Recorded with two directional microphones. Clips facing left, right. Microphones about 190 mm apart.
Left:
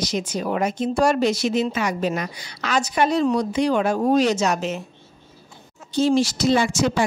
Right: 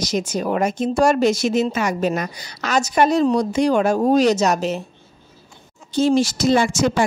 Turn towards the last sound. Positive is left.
turn(degrees=-50)  # may be behind; listen again after turning